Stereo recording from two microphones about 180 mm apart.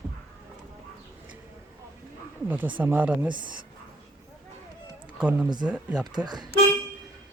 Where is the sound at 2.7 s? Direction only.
10° right (ahead or behind).